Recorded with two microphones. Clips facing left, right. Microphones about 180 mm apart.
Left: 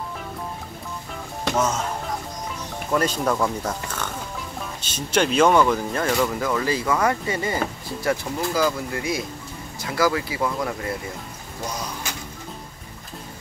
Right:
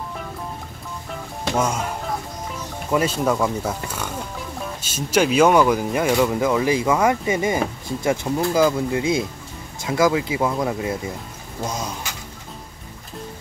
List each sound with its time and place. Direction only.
1.5 s speech: 10° right (ahead or behind)
2.9 s speech: 10° right (ahead or behind)